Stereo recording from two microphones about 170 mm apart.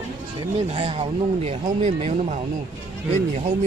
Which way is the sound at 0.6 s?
35° right (ahead or behind).